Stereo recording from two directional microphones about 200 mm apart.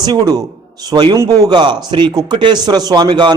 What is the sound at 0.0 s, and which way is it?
A man's voice, 20° right (ahead or behind).